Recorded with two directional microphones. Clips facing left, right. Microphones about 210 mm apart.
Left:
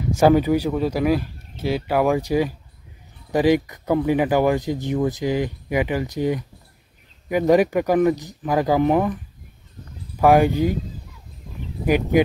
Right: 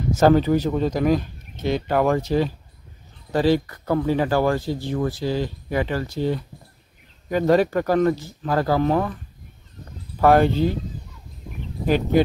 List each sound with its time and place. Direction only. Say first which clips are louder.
0.1 s speech: left 1 dB; 15° left (ahead or behind)
10.2 s speech: left 1 dB; 15° left (ahead or behind)
11.8 s speech: left 1 dB; 15° left (ahead or behind)